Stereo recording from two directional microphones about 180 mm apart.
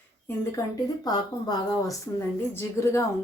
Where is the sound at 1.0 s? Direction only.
25° left (ahead or behind).